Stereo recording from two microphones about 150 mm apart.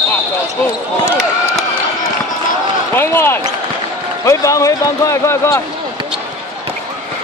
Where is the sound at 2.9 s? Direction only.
15° left (ahead or behind).